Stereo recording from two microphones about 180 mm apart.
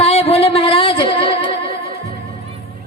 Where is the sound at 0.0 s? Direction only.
35° left (ahead or behind).